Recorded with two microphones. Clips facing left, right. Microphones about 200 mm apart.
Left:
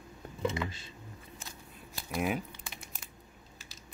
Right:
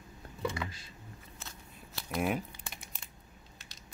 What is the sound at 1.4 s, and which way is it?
Scissors, 10° left (ahead or behind).